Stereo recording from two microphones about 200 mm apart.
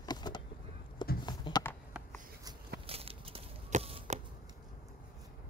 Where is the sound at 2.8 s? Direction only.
30° right (ahead or behind).